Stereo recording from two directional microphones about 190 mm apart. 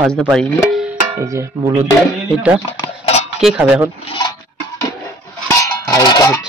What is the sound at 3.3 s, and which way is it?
Speech, 5° right (ahead or behind).